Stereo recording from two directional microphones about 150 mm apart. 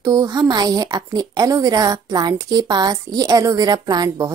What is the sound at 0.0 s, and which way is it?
A woman's voice, 25° right (ahead or behind).